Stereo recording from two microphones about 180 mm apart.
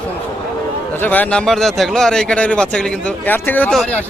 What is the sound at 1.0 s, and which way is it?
Speech, 10° left (ahead or behind).